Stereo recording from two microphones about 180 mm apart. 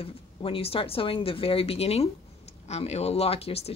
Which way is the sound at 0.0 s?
30° left (ahead or behind).